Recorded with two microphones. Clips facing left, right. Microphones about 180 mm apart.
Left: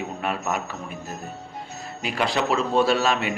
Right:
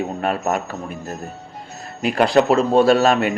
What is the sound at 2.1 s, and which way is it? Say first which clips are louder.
A man's voice: right 8 dB; 45° right (ahead or behind).